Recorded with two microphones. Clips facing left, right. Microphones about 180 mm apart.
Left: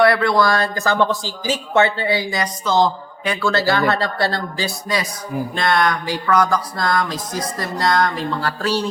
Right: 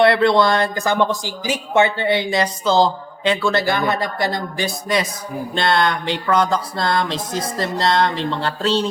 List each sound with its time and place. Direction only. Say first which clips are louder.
0.0 s speech: right 1 dB; 25° right (ahead or behind)
3.4 s speech: left 5 dB; 20° right (ahead or behind)